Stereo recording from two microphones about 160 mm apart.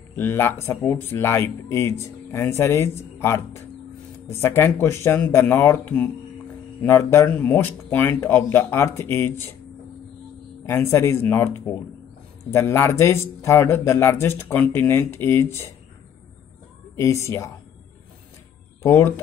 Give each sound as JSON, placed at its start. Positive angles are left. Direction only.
{"t": 0.1, "sound": "speech", "side_deg": 15}
{"t": 10.6, "sound": "speech", "side_deg": 15}
{"t": 16.9, "sound": "speech", "side_deg": 20}
{"t": 18.8, "sound": "speech", "side_deg": 15}